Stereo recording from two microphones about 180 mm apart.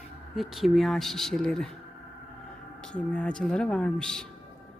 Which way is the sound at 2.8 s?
5° left (ahead or behind).